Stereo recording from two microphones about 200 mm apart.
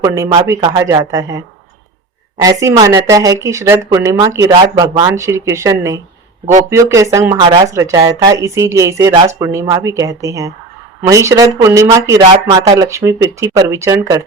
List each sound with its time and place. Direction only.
0.0 s speech: 15° right (ahead or behind)
2.4 s speech: 15° right (ahead or behind)